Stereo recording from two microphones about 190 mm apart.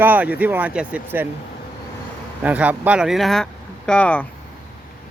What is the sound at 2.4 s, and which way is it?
Speech, 10° right (ahead or behind).